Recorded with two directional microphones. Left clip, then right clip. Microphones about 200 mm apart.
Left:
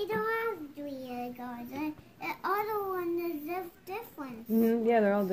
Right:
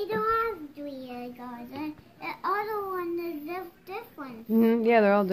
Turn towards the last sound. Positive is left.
turn(degrees=-25)  # may be behind; listen again after turning